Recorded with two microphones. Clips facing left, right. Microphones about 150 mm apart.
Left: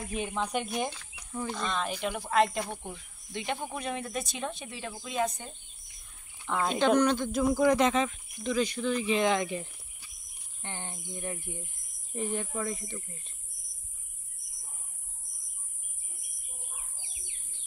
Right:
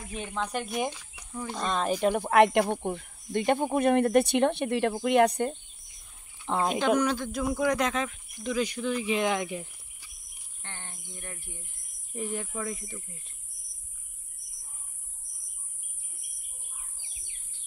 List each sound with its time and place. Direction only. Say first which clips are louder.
0.1 s speech: even; 5° left (ahead or behind)
0.8 s speech: right 3 dB; 10° right (ahead or behind)
1.6 s speech: right 8 dB; 40° right (ahead or behind); by 5.6 s 65° right (ahead or behind)
6.7 s speech: left 2 dB; 5° right (ahead or behind)
8.5 s speech: even; 10° right (ahead or behind)
10.6 s speech: left 5 dB; 15° left (ahead or behind)
12.1 s speech: left 1 dB; centre (ahead or behind)